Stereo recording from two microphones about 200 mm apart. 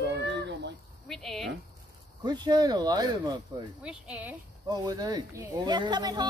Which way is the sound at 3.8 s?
5° right (ahead or behind).